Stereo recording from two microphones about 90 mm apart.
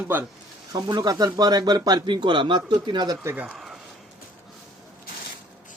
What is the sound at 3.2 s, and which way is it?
Speech, 25° right (ahead or behind).